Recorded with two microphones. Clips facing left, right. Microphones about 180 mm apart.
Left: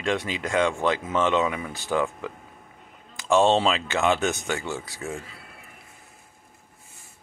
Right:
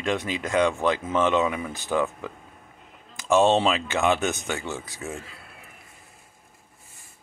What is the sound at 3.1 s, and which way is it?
Speech, 15° right (ahead or behind).